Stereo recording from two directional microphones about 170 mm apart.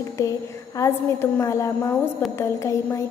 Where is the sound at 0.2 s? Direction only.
20° left (ahead or behind).